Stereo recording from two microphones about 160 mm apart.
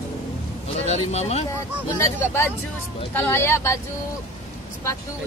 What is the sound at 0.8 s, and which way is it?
Speech, 40° left (ahead or behind).